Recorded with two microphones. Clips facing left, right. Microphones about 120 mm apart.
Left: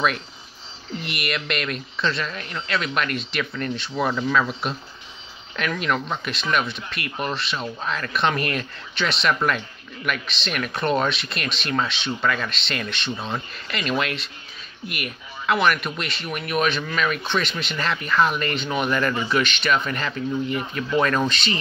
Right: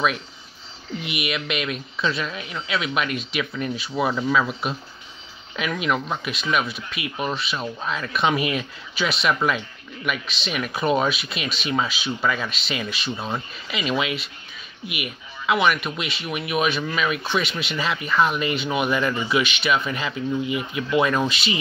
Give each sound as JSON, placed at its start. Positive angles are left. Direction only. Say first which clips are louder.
{"t": 1.0, "sound": "speech", "louder": "right 1 dB", "side_deg": 0}